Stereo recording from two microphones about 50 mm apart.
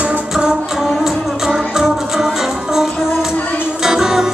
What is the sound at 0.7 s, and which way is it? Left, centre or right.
Music, centre.